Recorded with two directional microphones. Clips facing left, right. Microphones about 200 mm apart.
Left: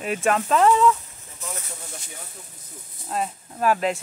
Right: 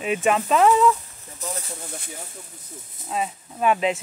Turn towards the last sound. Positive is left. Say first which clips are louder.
# right 1 dB
turn(degrees=0)  # may be behind; listen again after turning